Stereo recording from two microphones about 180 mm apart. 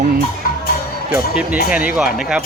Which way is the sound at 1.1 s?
5° right (ahead or behind).